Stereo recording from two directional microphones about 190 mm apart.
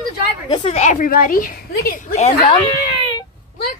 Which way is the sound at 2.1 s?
35° left (ahead or behind).